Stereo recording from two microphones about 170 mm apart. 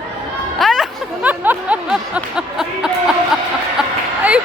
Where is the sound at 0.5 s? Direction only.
Centre (ahead or behind).